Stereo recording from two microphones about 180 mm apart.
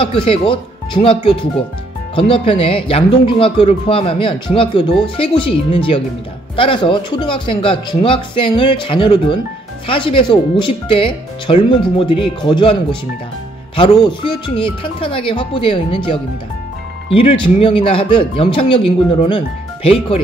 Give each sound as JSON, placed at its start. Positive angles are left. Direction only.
{"t": 0.0, "sound": "speech", "side_deg": 30}
{"t": 13.7, "sound": "speech", "side_deg": 30}